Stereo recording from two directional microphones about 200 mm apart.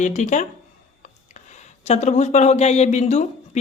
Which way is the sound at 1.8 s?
35° left (ahead or behind).